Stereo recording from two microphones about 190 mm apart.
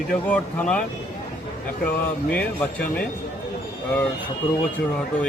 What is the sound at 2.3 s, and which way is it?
Speech, 10° left (ahead or behind).